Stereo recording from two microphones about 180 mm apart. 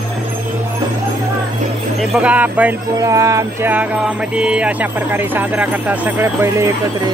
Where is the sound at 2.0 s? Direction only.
5° right (ahead or behind).